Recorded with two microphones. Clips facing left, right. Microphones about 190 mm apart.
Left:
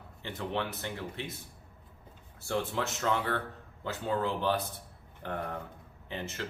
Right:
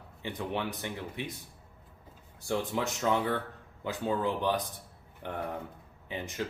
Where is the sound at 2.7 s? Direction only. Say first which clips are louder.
Right 2 dB; 15° right (ahead or behind).